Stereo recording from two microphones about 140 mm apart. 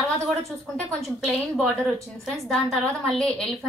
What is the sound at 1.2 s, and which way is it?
A woman's voice, centre (ahead or behind).